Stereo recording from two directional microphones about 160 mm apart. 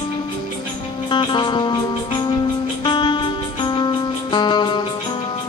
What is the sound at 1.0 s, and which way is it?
Music, 30° left (ahead or behind).